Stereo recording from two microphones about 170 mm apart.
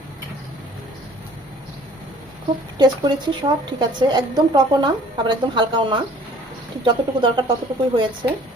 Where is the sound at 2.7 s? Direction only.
25° right (ahead or behind).